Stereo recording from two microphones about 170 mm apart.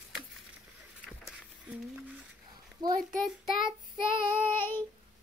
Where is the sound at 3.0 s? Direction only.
Centre (ahead or behind).